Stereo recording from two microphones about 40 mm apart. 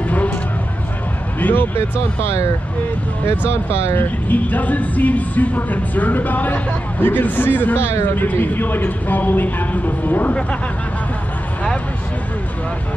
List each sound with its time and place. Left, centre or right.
1.4 s speech: left
3.9 s a man's voice: left
8.8 s speech: left